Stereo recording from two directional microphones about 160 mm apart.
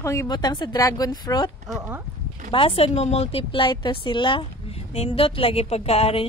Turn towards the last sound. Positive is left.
turn(degrees=40)  # may be behind; listen again after turning